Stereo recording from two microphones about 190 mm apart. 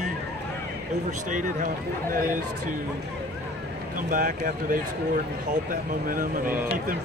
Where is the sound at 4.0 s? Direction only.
45° right (ahead or behind).